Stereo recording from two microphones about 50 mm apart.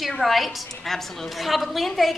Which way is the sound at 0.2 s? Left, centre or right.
Centre.